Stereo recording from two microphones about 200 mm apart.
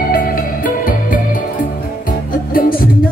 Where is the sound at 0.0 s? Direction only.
45° left (ahead or behind).